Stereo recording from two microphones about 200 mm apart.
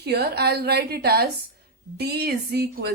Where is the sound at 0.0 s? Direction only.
55° right (ahead or behind).